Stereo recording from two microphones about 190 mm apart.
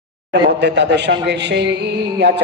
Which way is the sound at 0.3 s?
65° right (ahead or behind).